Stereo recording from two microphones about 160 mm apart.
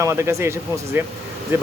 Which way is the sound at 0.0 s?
15° right (ahead or behind).